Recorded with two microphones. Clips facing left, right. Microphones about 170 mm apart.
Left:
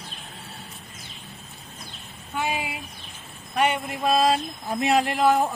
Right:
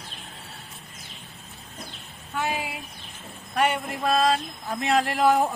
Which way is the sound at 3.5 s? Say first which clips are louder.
Left 1 dB; centre (ahead or behind).